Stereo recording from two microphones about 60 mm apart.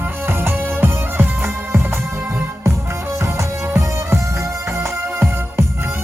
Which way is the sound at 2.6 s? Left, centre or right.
Right.